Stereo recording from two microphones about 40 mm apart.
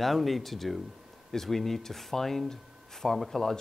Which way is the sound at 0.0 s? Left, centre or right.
Centre.